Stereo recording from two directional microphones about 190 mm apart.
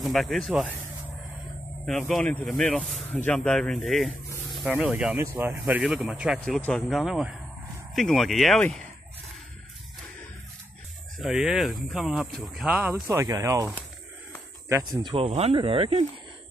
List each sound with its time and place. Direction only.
0.0 s speech: centre (ahead or behind)
11.1 s speech: centre (ahead or behind)
13.0 s speech: 15° right (ahead or behind)
14.7 s speech: 25° right (ahead or behind)